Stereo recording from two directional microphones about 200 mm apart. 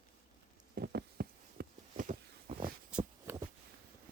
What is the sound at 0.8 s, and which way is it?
Insect, 55° right (ahead or behind).